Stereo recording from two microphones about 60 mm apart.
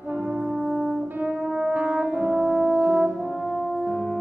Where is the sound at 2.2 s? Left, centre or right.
Centre.